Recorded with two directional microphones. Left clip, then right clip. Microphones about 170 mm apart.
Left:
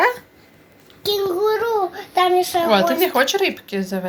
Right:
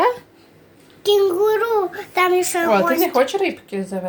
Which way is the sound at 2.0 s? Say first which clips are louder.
Left 1 dB; 40° right (ahead or behind).